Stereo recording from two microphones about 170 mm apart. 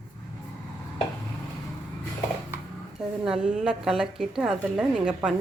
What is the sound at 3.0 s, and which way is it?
A woman's voice, 5° right (ahead or behind).